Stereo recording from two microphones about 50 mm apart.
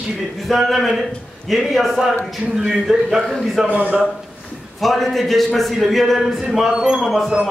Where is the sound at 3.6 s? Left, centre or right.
Right.